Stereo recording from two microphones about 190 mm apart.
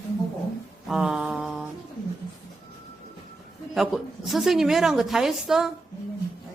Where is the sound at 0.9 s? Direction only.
5° right (ahead or behind).